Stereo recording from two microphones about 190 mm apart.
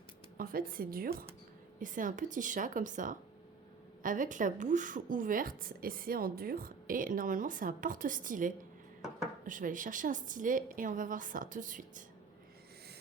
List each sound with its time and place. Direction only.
0.3 s a woman's voice: 50° right (ahead or behind)